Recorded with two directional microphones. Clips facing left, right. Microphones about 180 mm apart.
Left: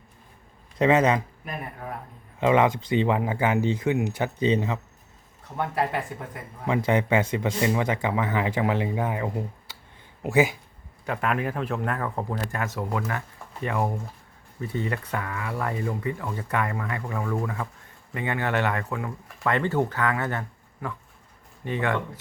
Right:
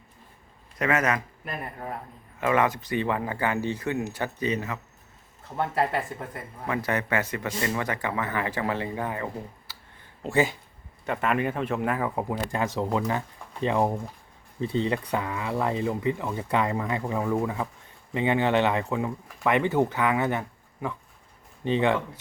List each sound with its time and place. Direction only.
0.8 s speech: 25° left (ahead or behind)
2.4 s speech: 20° left (ahead or behind)
5.5 s speech: centre (ahead or behind)
6.7 s speech: 20° left (ahead or behind)
11.0 s speech: centre (ahead or behind)
12.5 s speech: 25° right (ahead or behind)